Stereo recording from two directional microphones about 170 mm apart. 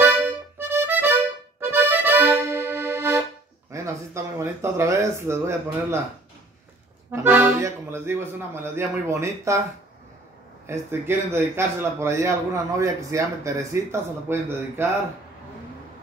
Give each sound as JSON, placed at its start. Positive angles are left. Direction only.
{"t": 0.0, "sound": "accordion", "side_deg": -15}
{"t": 3.7, "sound": "speech", "side_deg": -15}
{"t": 7.1, "sound": "a man's voice", "side_deg": -10}
{"t": 10.7, "sound": "a man's voice", "side_deg": -15}